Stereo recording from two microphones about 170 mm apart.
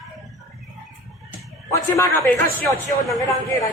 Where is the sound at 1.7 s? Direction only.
15° left (ahead or behind).